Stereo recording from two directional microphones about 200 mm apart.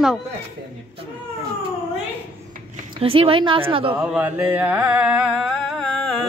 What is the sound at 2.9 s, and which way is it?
A woman's voice, 30° right (ahead or behind).